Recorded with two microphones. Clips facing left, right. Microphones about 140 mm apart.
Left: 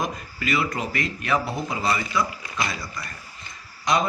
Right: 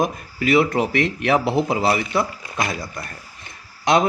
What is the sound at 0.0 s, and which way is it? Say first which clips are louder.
Speech: right 7 dB; 55° right (ahead or behind).